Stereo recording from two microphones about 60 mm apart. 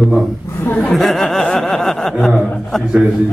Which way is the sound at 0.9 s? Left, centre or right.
Centre.